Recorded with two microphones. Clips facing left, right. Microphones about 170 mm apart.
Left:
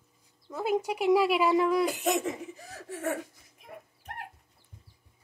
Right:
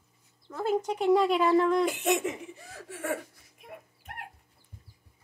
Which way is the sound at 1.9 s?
35° left (ahead or behind).